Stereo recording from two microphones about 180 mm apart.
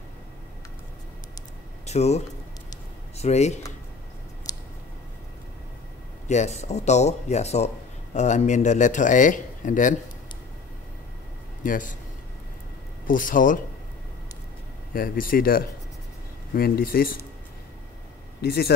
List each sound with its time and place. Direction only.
1.9 s speech: 35° left (ahead or behind)
4.5 s a sound: 20° left (ahead or behind)
6.2 s speech: 40° left (ahead or behind)
11.6 s speech: 45° left (ahead or behind)
13.0 s speech: 50° left (ahead or behind)
15.0 s speech: 55° left (ahead or behind)
18.4 s speech: 65° left (ahead or behind)